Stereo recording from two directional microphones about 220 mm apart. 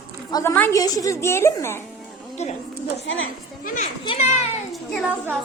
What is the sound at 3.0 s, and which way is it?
Speech, 60° left (ahead or behind).